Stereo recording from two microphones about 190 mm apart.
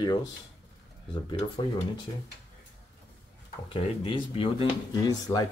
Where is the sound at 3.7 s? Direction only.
30° left (ahead or behind).